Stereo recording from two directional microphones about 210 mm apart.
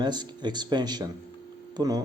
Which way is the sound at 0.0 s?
20° right (ahead or behind).